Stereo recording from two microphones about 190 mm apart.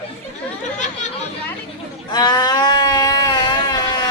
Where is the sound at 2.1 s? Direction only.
20° left (ahead or behind).